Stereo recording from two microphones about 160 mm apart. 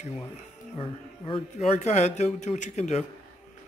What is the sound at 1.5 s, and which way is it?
A man's voice, 45° left (ahead or behind).